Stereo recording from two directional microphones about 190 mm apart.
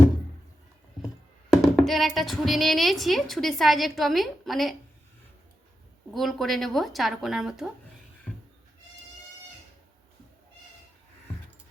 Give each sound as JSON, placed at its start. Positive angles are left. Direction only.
{"t": 1.7, "sound": "a woman's voice", "side_deg": 0}
{"t": 6.1, "sound": "a woman's voice", "side_deg": 0}